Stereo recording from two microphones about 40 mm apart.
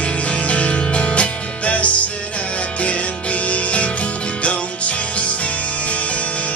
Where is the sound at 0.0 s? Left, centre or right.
Left.